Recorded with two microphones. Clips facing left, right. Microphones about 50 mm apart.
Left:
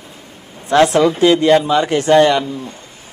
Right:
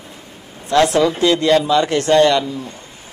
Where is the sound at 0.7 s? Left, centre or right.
Left.